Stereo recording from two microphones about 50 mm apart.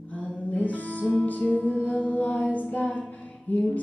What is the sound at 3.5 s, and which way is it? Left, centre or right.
Music, left.